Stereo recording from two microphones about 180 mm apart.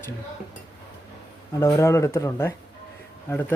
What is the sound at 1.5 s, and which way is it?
Speech, 15° left (ahead or behind).